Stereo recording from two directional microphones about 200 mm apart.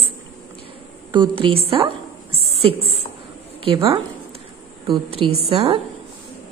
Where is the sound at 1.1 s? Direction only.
25° right (ahead or behind).